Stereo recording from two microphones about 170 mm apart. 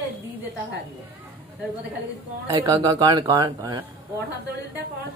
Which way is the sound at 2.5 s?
25° right (ahead or behind).